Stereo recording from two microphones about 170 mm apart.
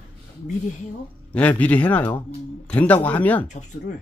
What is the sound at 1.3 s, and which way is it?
A man's voice, 10° left (ahead or behind).